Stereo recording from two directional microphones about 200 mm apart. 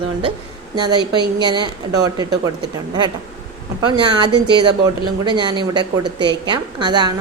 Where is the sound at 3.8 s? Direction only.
20° right (ahead or behind).